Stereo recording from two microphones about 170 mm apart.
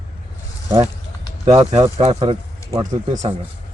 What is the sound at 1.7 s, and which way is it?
Speech, 40° right (ahead or behind).